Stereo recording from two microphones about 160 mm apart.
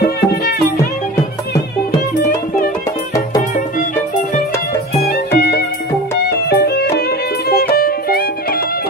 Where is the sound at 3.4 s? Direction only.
50° left (ahead or behind).